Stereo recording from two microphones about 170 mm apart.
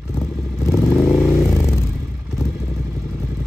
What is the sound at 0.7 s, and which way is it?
Vehicle, 15° left (ahead or behind).